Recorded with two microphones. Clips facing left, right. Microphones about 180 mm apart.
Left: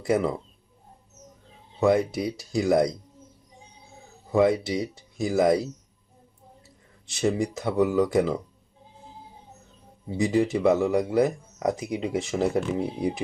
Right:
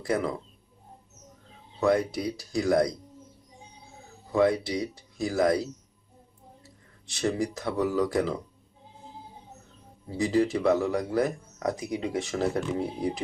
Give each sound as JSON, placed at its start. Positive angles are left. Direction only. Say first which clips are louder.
{"t": 0.0, "sound": "speech", "louder": "left 4 dB", "side_deg": 20}
{"t": 1.8, "sound": "speech", "louder": "left 3 dB", "side_deg": 25}
{"t": 4.3, "sound": "speech", "louder": "left 2 dB", "side_deg": 20}
{"t": 7.1, "sound": "speech", "louder": "left 3 dB", "side_deg": 25}
{"t": 10.1, "sound": "speech", "louder": "left 2 dB", "side_deg": 20}